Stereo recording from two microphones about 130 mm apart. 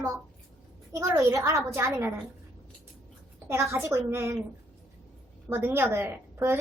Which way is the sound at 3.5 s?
20° right (ahead or behind).